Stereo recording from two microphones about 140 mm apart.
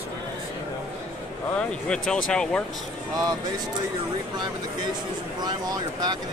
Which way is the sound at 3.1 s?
30° right (ahead or behind).